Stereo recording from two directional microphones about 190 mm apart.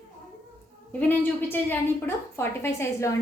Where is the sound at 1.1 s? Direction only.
10° left (ahead or behind).